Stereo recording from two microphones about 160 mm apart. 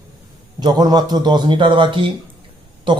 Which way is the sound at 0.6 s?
25° right (ahead or behind).